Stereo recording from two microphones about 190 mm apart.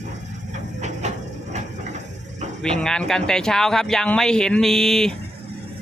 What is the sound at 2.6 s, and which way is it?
Speech, 5° left (ahead or behind).